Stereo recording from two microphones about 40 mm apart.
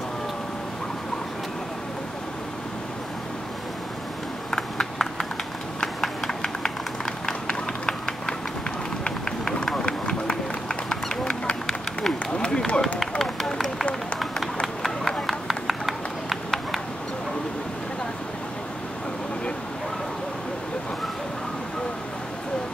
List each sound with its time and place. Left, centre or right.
4.5 s a sound: centre
7.4 s run: centre
9.8 s run: left
10.9 s a sound: centre
12.4 s run: left
14.2 s run: centre